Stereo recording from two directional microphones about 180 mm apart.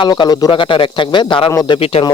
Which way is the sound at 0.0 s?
25° left (ahead or behind).